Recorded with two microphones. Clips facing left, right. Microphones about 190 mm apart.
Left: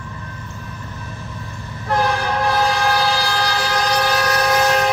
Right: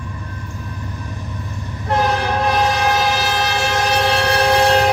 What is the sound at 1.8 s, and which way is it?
Train, 20° right (ahead or behind).